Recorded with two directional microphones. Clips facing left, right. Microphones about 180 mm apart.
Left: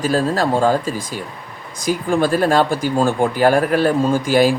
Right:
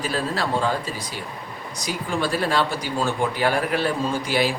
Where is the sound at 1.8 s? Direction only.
50° left (ahead or behind).